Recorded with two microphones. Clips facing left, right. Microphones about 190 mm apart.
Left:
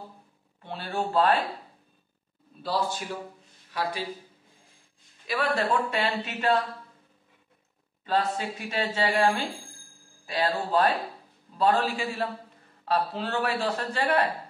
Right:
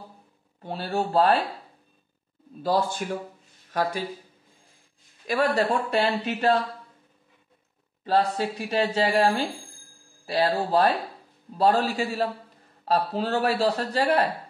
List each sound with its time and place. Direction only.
0.6 s a man's voice: 40° right (ahead or behind)
2.6 s a man's voice: 50° right (ahead or behind)
5.2 s a man's voice: 45° right (ahead or behind)
8.0 s a man's voice: 35° right (ahead or behind)